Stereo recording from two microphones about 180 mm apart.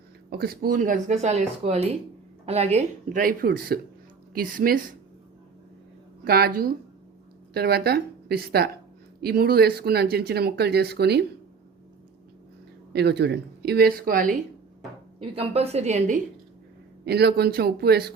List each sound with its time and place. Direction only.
0.3 s speech: 60° right (ahead or behind)
6.2 s speech: 60° right (ahead or behind)
12.9 s speech: 65° right (ahead or behind); by 14.3 s 50° right (ahead or behind)
15.2 s a woman's voice: 35° right (ahead or behind)
17.1 s speech: 65° right (ahead or behind)